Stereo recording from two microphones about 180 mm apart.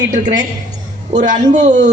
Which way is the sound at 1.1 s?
40° right (ahead or behind).